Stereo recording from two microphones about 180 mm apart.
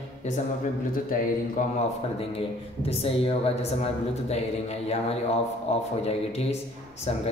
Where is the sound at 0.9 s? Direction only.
50° left (ahead or behind).